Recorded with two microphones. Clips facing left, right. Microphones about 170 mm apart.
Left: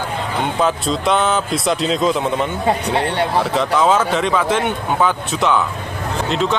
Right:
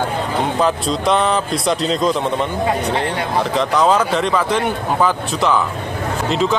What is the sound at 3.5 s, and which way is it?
Speech, centre (ahead or behind).